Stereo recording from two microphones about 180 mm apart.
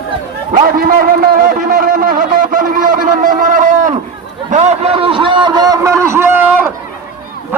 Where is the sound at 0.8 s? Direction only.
55° right (ahead or behind).